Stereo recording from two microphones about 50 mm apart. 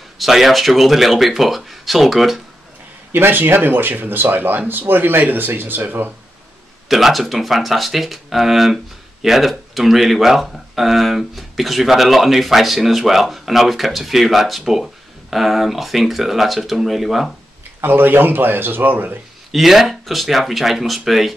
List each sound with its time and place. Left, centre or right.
0.2 s speech: centre
3.1 s speech: right
6.9 s speech: centre
17.8 s speech: right
19.5 s speech: centre